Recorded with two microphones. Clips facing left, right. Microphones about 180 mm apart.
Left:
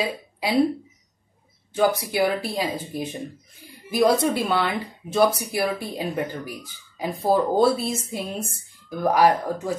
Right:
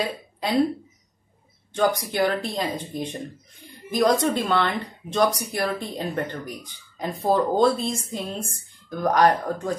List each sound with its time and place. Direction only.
0.0 s speech: 5° left (ahead or behind)
1.7 s speech: 5° left (ahead or behind)